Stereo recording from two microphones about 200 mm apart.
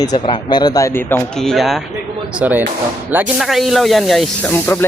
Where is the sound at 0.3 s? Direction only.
20° left (ahead or behind); by 4.5 s centre (ahead or behind).